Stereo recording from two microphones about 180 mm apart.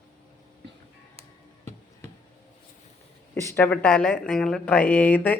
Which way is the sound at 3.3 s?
15° left (ahead or behind).